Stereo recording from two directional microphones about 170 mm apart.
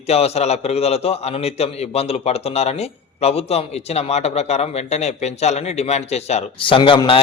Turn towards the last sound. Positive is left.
turn(degrees=30)  # may be behind; listen again after turning